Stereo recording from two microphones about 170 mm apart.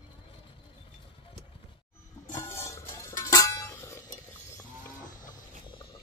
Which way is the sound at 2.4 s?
15° left (ahead or behind).